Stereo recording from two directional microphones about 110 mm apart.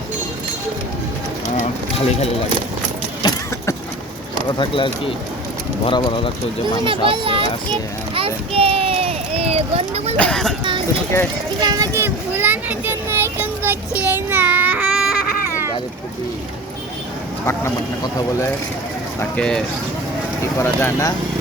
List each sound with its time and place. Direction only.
4.4 s speech: 45° left (ahead or behind)
6.8 s a child's voice: 50° right (ahead or behind); by 10.2 s 70° right (ahead or behind)
10.2 s speech: 5° left (ahead or behind)
10.6 s a sound: 45° right (ahead or behind)
11.6 s a child's voice: 40° right (ahead or behind)
11.9 s a sound: 20° right (ahead or behind)
17.4 s speech: 25° left (ahead or behind)
19.4 s speech: 10° left (ahead or behind)
20.6 s speech: 20° left (ahead or behind)